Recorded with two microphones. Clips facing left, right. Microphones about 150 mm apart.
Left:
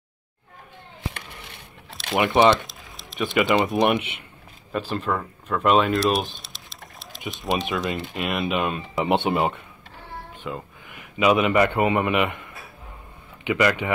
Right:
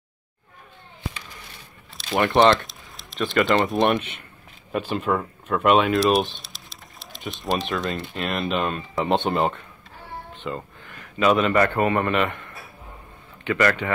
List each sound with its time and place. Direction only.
1.9 s biting: centre (ahead or behind)
2.3 s speech: centre (ahead or behind)
6.3 s pigeon: centre (ahead or behind)
8.2 s speech: 5° left (ahead or behind)
10.9 s a man's voice: 15° left (ahead or behind)